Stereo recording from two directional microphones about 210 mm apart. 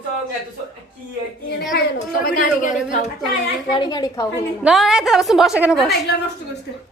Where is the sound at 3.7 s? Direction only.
20° left (ahead or behind).